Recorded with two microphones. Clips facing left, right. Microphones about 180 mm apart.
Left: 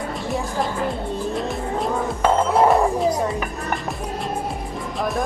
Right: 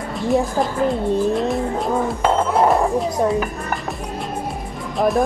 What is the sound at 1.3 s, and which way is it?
Vehicle, centre (ahead or behind).